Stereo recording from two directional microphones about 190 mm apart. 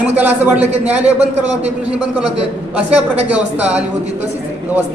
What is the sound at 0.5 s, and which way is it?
Speech, 35° right (ahead or behind).